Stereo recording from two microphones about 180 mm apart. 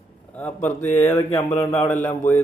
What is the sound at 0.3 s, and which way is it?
Speech, 10° left (ahead or behind).